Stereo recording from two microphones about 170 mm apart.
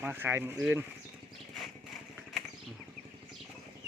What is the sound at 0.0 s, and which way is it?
Speech, 10° right (ahead or behind).